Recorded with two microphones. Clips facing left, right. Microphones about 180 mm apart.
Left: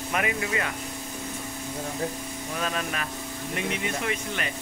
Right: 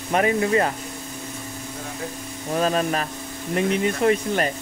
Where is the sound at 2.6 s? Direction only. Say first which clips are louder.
Right 9 dB; 35° right (ahead or behind).